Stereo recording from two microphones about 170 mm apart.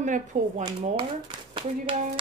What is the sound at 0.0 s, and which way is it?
Speech, 45° right (ahead or behind).